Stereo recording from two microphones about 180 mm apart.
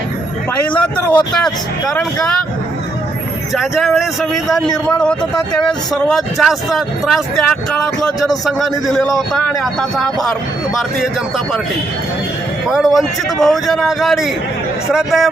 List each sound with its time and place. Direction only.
0.7 s speech: 5° left (ahead or behind)
3.5 s speech: centre (ahead or behind)
12.6 s speech: centre (ahead or behind)